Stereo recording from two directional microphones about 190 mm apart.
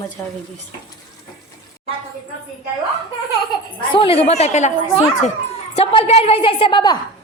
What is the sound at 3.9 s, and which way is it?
Speech, 30° left (ahead or behind).